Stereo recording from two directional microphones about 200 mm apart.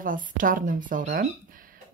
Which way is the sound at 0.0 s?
45° right (ahead or behind).